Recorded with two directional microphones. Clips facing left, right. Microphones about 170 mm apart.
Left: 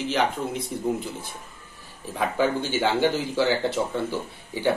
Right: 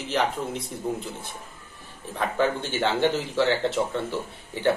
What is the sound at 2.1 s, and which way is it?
Speech, 5° left (ahead or behind).